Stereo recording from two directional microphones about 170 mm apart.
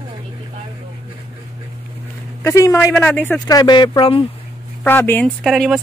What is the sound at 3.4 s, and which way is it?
Speech, 25° left (ahead or behind).